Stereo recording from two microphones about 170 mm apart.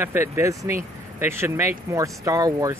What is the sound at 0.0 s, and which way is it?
Speech, 15° right (ahead or behind).